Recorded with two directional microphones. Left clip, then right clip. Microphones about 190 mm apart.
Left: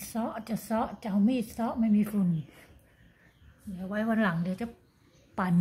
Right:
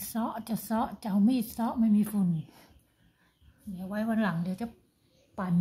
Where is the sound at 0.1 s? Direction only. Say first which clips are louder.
Even; 10° right (ahead or behind).